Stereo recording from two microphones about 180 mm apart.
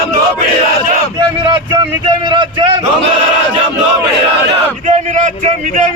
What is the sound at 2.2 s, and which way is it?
Speech, 25° right (ahead or behind).